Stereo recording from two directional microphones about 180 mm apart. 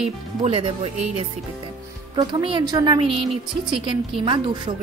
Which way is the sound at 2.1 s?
25° right (ahead or behind).